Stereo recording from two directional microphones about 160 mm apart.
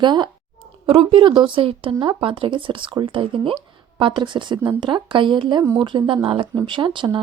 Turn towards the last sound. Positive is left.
turn(degrees=-30)  # may be behind; listen again after turning